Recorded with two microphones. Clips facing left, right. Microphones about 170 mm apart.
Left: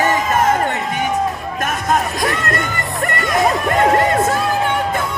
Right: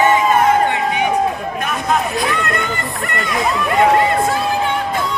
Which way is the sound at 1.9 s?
45° left (ahead or behind).